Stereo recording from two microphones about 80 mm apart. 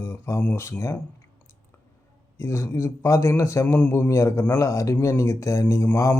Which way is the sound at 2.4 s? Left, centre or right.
Left.